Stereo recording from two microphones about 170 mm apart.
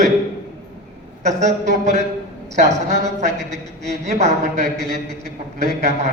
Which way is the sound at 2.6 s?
40° right (ahead or behind).